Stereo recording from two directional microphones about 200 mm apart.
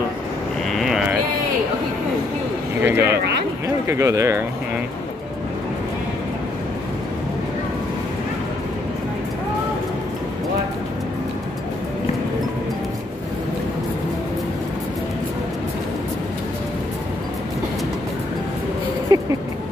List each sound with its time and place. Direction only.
0.7 s livestock: centre (ahead or behind)
2.8 s speech: 15° right (ahead or behind)
19.1 s a sound: 20° right (ahead or behind)